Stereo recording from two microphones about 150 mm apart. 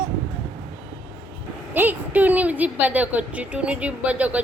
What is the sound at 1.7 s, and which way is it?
A woman's voice, 10° right (ahead or behind).